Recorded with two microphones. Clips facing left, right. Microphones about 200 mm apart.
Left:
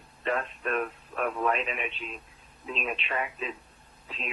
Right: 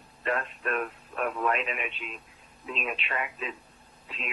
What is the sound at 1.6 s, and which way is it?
Speech, centre (ahead or behind).